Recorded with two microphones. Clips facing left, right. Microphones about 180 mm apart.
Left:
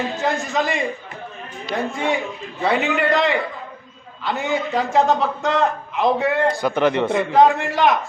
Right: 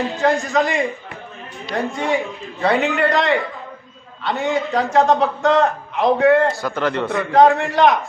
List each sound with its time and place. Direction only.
0.2 s a man's voice: centre (ahead or behind)
6.5 s speech: 15° left (ahead or behind)
7.3 s a man's voice: centre (ahead or behind)